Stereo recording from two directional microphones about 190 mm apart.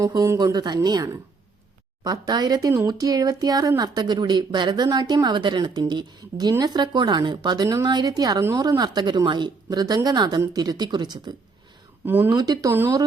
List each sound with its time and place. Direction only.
0.0 s speech: 15° right (ahead or behind)
12.0 s speech: 10° right (ahead or behind)